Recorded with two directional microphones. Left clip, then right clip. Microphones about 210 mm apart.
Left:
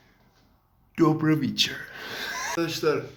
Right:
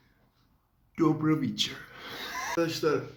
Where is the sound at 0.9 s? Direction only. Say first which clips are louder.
Left 4 dB; 25° left (ahead or behind).